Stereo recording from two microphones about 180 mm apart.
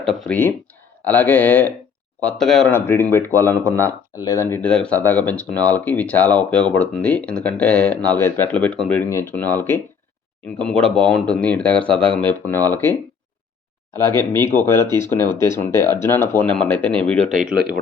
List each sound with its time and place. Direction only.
0.0 s speech: centre (ahead or behind)
10.9 s speech: 5° left (ahead or behind)
13.9 s speech: 20° right (ahead or behind)
14.3 s speech: 10° left (ahead or behind)
17.2 s speech: 45° right (ahead or behind)